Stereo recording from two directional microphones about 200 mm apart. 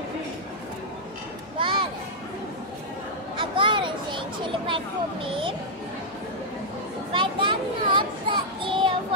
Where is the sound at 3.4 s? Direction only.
25° right (ahead or behind).